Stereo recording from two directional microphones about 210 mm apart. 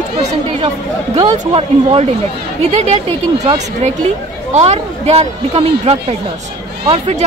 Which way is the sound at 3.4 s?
30° right (ahead or behind).